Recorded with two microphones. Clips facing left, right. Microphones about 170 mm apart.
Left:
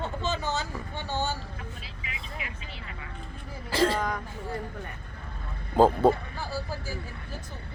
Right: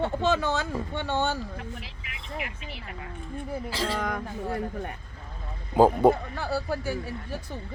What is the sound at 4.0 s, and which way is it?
Speech, 60° right (ahead or behind).